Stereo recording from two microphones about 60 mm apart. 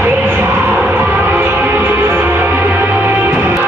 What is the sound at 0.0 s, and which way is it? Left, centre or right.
Music, right.